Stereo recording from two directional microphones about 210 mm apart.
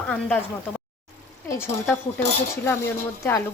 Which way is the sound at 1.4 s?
10° left (ahead or behind).